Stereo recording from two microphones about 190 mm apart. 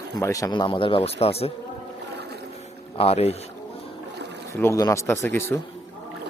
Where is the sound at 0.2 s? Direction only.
15° left (ahead or behind).